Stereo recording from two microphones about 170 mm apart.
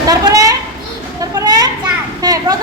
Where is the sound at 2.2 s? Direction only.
20° right (ahead or behind).